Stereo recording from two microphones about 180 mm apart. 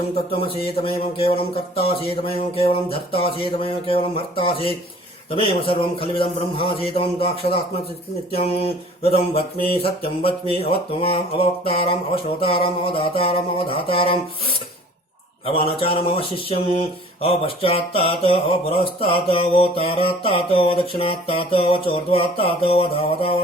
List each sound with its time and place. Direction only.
0.4 s speech: 30° left (ahead or behind)
2.6 s speech: 30° left (ahead or behind)
15.4 s speech: 30° left (ahead or behind)